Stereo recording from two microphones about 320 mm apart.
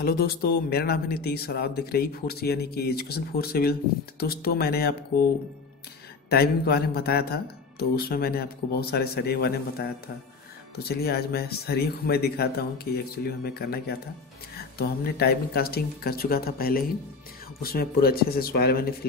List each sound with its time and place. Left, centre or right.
0.0 s speech: left
6.3 s speech: left